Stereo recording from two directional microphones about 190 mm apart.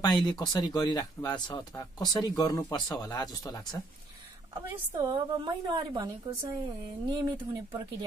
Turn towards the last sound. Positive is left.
turn(degrees=-20)  # may be behind; listen again after turning